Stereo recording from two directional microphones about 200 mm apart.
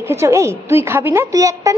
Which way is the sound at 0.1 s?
15° right (ahead or behind).